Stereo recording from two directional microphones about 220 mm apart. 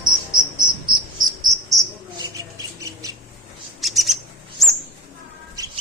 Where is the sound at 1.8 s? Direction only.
15° right (ahead or behind).